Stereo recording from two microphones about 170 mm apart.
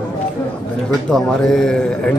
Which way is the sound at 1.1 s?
5° left (ahead or behind).